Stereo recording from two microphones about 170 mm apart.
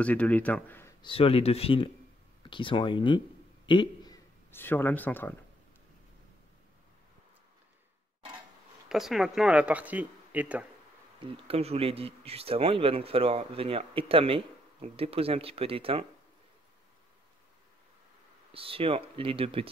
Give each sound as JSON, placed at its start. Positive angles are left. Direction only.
{"t": 0.0, "sound": "speech", "side_deg": 10}
{"t": 1.0, "sound": "a man's voice", "side_deg": 35}
{"t": 8.8, "sound": "speech", "side_deg": 0}
{"t": 11.1, "sound": "speech", "side_deg": -35}
{"t": 18.5, "sound": "speech", "side_deg": -35}